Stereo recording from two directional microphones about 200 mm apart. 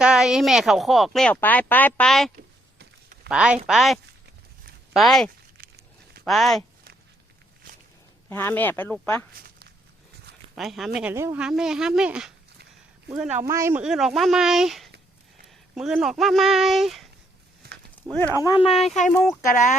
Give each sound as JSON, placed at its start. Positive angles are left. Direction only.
{"t": 0.0, "sound": "speech", "side_deg": -5}
{"t": 8.3, "sound": "speech", "side_deg": 10}
{"t": 10.5, "sound": "speech", "side_deg": 0}
{"t": 17.6, "sound": "a sound", "side_deg": -50}
{"t": 18.0, "sound": "speech", "side_deg": 5}
{"t": 18.4, "sound": "speech", "side_deg": 25}
{"t": 18.7, "sound": "speech", "side_deg": 0}